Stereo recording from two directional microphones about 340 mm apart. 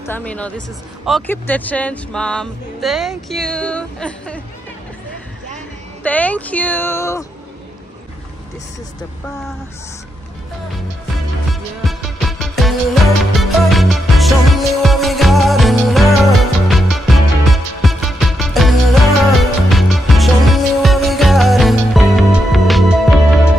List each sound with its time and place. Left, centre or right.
0.0 s speech: centre
6.0 s speech: centre
11.5 s music: centre